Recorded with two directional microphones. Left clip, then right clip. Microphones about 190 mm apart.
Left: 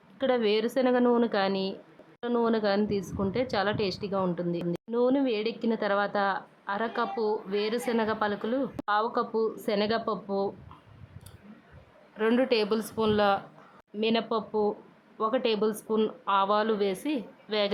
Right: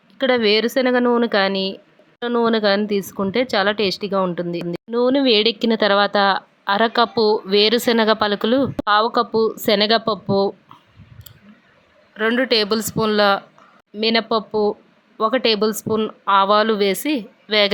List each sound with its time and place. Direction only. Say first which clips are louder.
0.2 s speech: right 9 dB; 15° right (ahead or behind)
12.4 s speech: right 8 dB; 15° right (ahead or behind)